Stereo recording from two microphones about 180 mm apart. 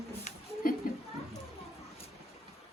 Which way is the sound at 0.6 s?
50° left (ahead or behind).